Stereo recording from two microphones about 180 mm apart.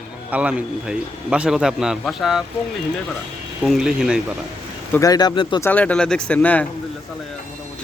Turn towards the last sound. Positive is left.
turn(degrees=10)  # may be behind; listen again after turning